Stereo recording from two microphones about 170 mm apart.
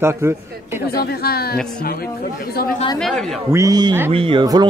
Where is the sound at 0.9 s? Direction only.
65° left (ahead or behind).